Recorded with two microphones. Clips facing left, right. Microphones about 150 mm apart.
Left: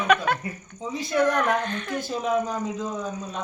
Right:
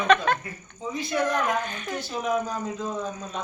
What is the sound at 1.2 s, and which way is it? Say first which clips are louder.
Speech: left 3 dB; 60° left (ahead or behind).